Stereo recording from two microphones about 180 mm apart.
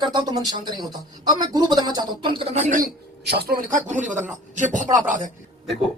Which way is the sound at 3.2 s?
60° right (ahead or behind).